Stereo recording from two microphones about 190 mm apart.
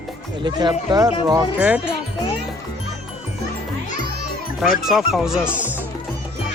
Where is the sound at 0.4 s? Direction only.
20° right (ahead or behind).